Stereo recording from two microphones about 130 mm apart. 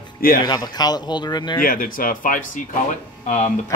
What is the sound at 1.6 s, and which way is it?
Speech, 90° left.